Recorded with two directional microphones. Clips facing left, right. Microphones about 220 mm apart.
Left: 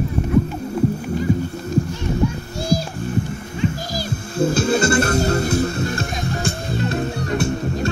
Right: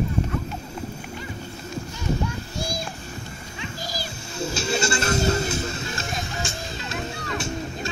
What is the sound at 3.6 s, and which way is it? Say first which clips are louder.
Music: left 10 dB; 55° left (ahead or behind).